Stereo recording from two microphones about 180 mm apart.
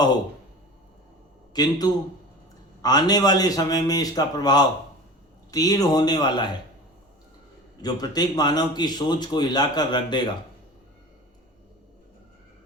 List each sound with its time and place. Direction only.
1.5 s speech: 20° left (ahead or behind)
7.8 s speech: 20° left (ahead or behind)